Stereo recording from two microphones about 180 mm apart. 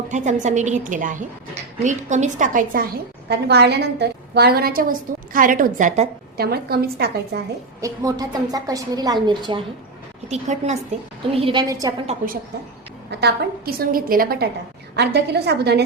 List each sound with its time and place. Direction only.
0.1 s a woman's voice: 40° right (ahead or behind); by 7.4 s 60° right (ahead or behind)
7.8 s a woman's voice: 20° right (ahead or behind)
10.2 s a woman's voice: 40° right (ahead or behind)
11.7 s a woman's voice: 20° right (ahead or behind)
13.1 s a woman's voice: 65° right (ahead or behind)
14.9 s a woman's voice: 70° right (ahead or behind)